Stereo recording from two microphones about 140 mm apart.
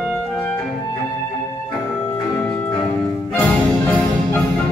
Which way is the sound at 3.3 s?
10° left (ahead or behind).